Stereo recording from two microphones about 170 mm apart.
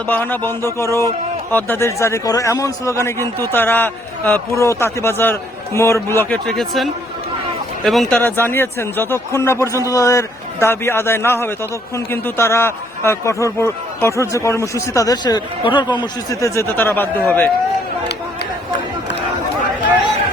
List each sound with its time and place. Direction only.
0.1 s a man's voice: 10° left (ahead or behind)
6.4 s speech: centre (ahead or behind)
8.2 s a man's voice: 10° left (ahead or behind)